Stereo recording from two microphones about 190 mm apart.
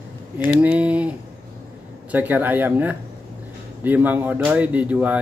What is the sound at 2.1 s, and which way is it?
Speech, 10° right (ahead or behind).